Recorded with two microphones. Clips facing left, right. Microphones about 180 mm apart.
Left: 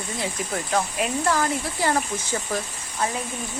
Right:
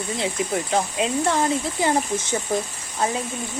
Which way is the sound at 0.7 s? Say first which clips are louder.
Right 1 dB; 25° right (ahead or behind).